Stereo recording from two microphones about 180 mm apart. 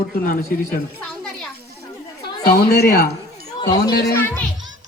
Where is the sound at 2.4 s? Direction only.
60° left (ahead or behind).